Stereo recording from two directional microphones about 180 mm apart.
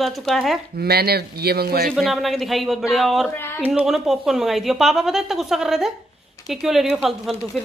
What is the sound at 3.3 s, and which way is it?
Speech, 15° left (ahead or behind).